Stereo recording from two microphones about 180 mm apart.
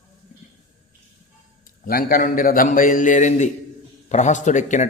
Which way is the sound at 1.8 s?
50° left (ahead or behind).